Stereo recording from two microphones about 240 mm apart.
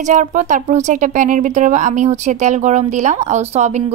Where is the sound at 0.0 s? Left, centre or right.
Right.